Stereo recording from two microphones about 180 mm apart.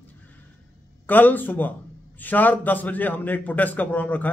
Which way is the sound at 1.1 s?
10° left (ahead or behind).